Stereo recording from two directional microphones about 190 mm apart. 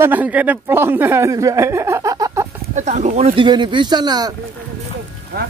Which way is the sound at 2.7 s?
40° right (ahead or behind).